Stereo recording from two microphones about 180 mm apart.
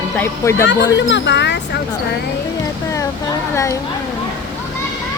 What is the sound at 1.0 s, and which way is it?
Speech, 80° left.